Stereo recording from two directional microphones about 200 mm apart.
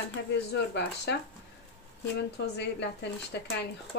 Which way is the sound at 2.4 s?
60° left (ahead or behind).